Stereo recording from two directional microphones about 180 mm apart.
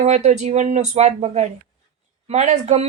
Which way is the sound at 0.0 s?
40° right (ahead or behind).